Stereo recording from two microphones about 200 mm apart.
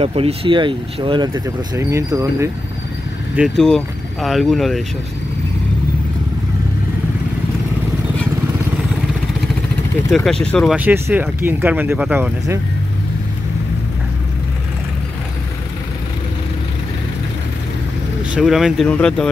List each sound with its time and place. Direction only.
0.0 s speech: 30° right (ahead or behind); by 2.5 s 15° right (ahead or behind)
3.3 s speech: centre (ahead or behind)
10.4 s speech: 5° left (ahead or behind)
10.8 s speech: 10° right (ahead or behind)
18.3 s speech: centre (ahead or behind)